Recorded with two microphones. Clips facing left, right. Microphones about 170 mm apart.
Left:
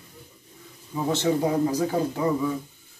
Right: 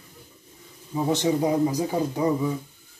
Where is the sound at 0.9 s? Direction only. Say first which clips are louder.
Right 1 dB; 15° right (ahead or behind).